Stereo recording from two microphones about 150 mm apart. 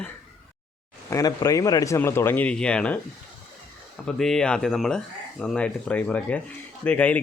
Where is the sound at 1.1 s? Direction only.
25° left (ahead or behind); by 3.0 s 10° left (ahead or behind).